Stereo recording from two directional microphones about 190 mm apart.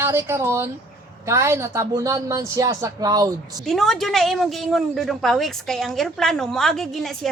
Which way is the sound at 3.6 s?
Centre (ahead or behind).